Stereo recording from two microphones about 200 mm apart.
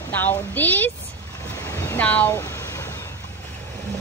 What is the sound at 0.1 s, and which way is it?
Speech, 10° left (ahead or behind).